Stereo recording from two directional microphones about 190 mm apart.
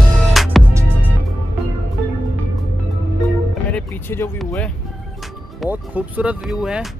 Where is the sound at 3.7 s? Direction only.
10° left (ahead or behind).